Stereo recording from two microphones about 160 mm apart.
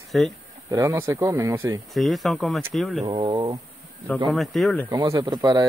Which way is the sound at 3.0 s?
30° right (ahead or behind).